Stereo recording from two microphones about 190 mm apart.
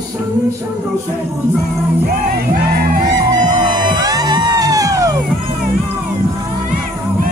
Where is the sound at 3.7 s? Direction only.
20° right (ahead or behind).